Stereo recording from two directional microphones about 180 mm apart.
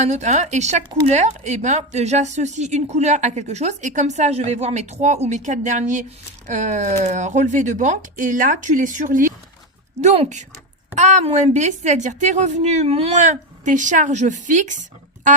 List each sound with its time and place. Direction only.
0.0 s speech: 40° right (ahead or behind)